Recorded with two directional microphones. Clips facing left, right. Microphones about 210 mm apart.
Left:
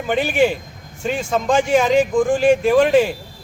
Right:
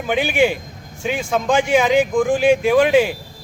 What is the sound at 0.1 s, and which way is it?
Speech, 5° right (ahead or behind).